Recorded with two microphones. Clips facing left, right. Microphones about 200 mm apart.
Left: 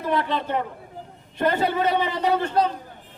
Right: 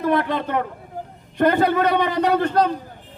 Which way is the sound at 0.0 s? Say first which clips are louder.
Right 4 dB; 50° right (ahead or behind).